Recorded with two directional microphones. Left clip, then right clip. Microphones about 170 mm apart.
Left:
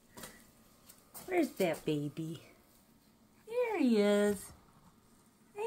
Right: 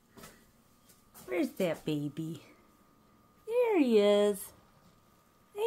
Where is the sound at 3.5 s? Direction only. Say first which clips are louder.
Right 5 dB; 25° right (ahead or behind).